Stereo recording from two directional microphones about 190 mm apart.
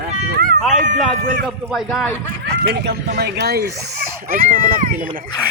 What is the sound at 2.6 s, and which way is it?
A child's voice, 55° right (ahead or behind).